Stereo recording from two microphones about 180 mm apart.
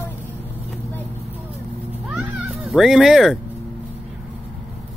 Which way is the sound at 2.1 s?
5° right (ahead or behind).